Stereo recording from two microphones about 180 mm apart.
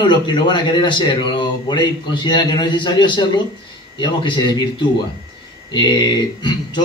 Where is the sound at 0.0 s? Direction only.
25° left (ahead or behind).